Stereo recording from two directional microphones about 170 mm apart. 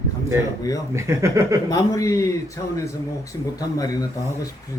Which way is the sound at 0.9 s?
15° right (ahead or behind).